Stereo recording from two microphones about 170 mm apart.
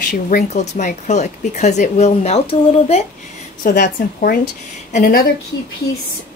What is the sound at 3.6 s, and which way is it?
A woman's voice, 50° left (ahead or behind).